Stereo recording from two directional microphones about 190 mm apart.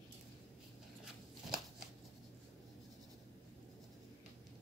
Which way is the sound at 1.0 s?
5° right (ahead or behind).